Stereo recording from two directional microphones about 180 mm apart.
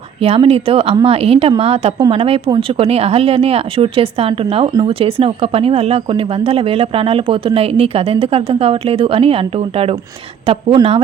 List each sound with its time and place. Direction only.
0.2 s a woman's voice: 35° right (ahead or behind)